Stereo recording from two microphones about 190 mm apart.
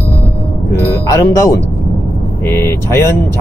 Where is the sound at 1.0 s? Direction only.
15° left (ahead or behind).